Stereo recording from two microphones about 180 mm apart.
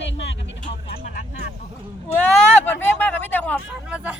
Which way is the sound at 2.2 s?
10° left (ahead or behind).